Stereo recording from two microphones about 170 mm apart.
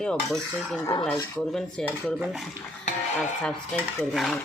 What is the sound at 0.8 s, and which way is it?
Speech, 25° left (ahead or behind).